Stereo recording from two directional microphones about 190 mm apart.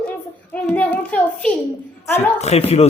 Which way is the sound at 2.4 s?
35° left (ahead or behind).